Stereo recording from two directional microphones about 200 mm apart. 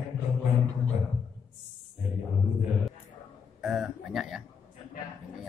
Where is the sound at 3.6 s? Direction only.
Centre (ahead or behind).